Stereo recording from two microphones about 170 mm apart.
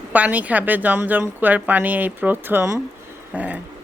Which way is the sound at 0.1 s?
10° right (ahead or behind).